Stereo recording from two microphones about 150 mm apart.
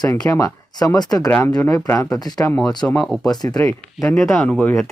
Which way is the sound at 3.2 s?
25° left (ahead or behind).